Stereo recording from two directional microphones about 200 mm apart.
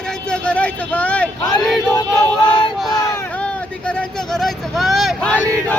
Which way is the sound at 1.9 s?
15° left (ahead or behind).